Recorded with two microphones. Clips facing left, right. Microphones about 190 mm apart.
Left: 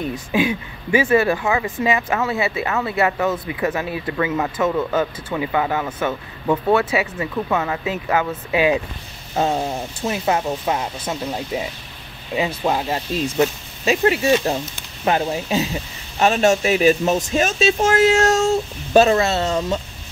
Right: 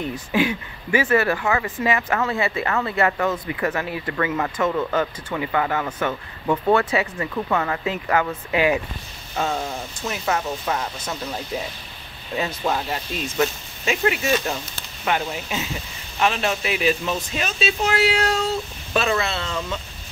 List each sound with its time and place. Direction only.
0.3 s speech: 20° left (ahead or behind)
3.4 s speech: 20° left (ahead or behind)
8.5 s speech: 20° left (ahead or behind)
9.3 s speech: 30° left (ahead or behind); by 12.8 s 15° left (ahead or behind)
13.8 s speech: 30° left (ahead or behind)